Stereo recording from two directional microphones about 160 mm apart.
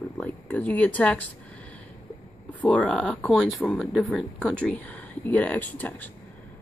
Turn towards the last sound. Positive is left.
turn(degrees=10)  # may be behind; listen again after turning